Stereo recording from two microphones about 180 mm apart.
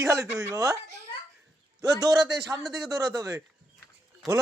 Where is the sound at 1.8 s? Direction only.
20° right (ahead or behind).